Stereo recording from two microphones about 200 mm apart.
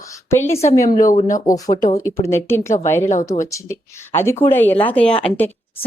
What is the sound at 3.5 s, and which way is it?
A woman's voice, 15° left (ahead or behind).